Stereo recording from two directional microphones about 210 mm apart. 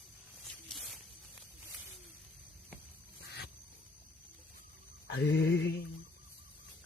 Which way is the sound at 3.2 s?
50° left (ahead or behind).